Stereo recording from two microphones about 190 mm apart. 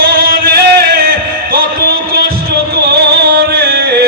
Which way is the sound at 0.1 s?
50° right (ahead or behind).